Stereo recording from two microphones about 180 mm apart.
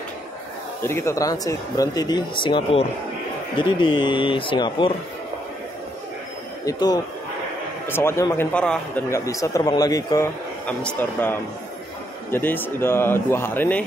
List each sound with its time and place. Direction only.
0.8 s speech: 15° left (ahead or behind)
6.6 s speech: 20° left (ahead or behind)
9.1 s speech: 20° left (ahead or behind)
10.8 s speech: 10° left (ahead or behind)